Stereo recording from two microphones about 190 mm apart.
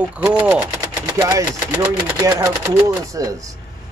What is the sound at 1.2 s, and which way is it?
Speech, 20° right (ahead or behind).